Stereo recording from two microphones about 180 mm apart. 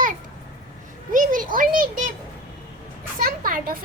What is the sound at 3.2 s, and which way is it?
Speech, 50° right (ahead or behind).